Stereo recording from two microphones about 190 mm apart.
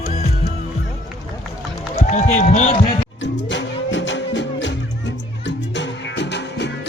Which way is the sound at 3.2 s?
70° left (ahead or behind).